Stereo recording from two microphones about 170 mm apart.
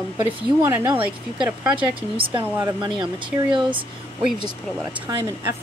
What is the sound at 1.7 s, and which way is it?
Speech, 30° right (ahead or behind).